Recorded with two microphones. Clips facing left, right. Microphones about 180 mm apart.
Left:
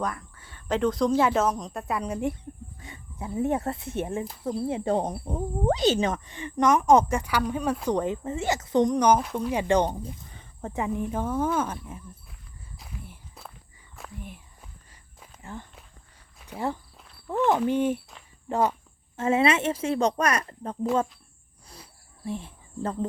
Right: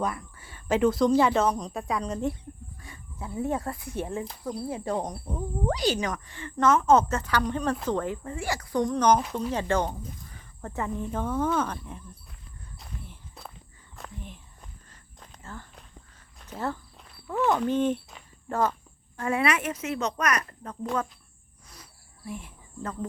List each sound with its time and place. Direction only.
0.0 s speech: 10° right (ahead or behind); by 2.3 s 10° left (ahead or behind)
2.8 s speech: 20° left (ahead or behind); by 9.5 s centre (ahead or behind)
9.5 s speech: 15° left (ahead or behind)
12.8 s walk: centre (ahead or behind)
16.4 s speech: 15° left (ahead or behind)
17.0 s a sound: centre (ahead or behind)
17.7 s speech: 10° left (ahead or behind); by 20.7 s 30° left (ahead or behind)
22.3 s speech: 30° left (ahead or behind)